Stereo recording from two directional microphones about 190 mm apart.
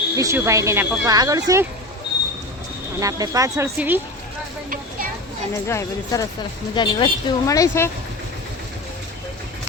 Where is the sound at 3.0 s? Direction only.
15° right (ahead or behind).